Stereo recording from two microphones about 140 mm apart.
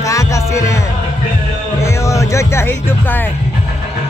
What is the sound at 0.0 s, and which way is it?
Music, 25° left (ahead or behind).